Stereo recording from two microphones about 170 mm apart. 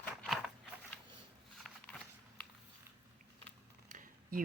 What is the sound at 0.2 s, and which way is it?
Biting, centre (ahead or behind).